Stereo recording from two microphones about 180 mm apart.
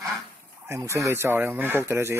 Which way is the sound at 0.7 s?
15° right (ahead or behind).